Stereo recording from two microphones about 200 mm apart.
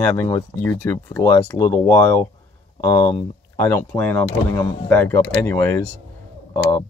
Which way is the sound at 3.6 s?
10° left (ahead or behind).